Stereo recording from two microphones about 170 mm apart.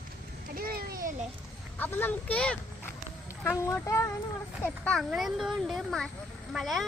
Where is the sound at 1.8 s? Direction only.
10° left (ahead or behind).